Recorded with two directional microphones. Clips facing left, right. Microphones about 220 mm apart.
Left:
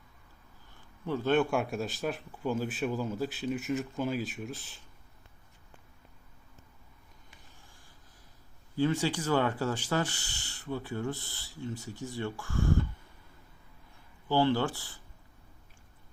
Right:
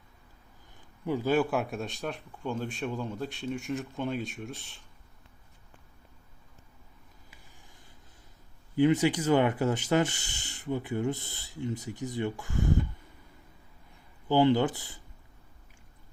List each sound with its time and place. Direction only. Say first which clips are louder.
0.7 s speech: right 3 dB; 15° right (ahead or behind); by 4.8 s centre (ahead or behind)
8.7 s speech: right 5 dB; 20° right (ahead or behind)
14.3 s speech: right 4 dB; 20° right (ahead or behind)